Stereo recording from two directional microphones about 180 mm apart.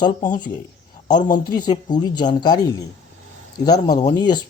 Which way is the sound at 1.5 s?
25° left (ahead or behind).